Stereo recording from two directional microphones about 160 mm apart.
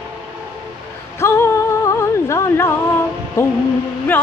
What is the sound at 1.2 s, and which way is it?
Music, 15° left (ahead or behind).